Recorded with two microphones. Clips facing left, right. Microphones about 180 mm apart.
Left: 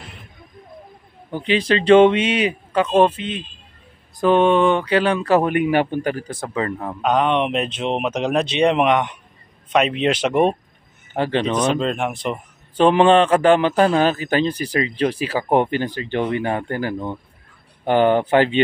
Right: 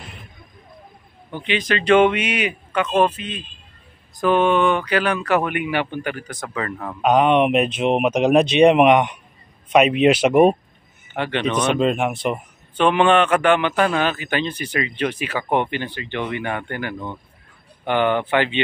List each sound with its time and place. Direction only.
1.3 s speech: 35° left (ahead or behind)
7.0 s speech: 10° right (ahead or behind)
11.1 s a man's voice: 35° left (ahead or behind)
11.8 s speech: 5° right (ahead or behind)
12.7 s a man's voice: 35° left (ahead or behind)